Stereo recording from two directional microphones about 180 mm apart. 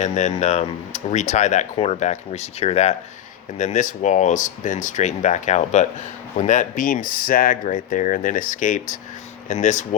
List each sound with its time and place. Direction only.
0.0 s speech: 40° left (ahead or behind)